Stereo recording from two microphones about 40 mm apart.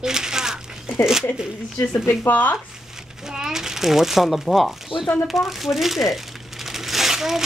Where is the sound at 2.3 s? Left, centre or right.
Left.